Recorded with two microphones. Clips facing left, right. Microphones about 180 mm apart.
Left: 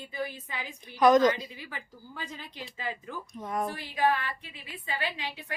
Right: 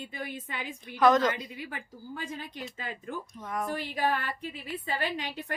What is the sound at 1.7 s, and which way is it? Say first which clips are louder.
A woman's voice: right 4 dB; 50° right (ahead or behind).